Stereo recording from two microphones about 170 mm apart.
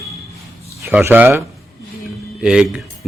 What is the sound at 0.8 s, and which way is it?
Speech, 10° right (ahead or behind).